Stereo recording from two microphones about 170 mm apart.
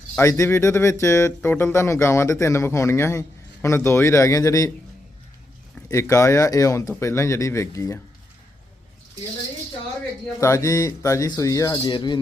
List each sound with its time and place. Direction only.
0.2 s speech: 15° left (ahead or behind)
5.9 s speech: 15° left (ahead or behind)
10.4 s speech: 20° left (ahead or behind)